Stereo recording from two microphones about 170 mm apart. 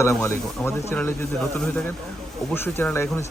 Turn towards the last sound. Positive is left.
turn(degrees=15)  # may be behind; listen again after turning